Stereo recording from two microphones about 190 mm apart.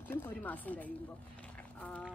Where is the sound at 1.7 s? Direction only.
10° left (ahead or behind).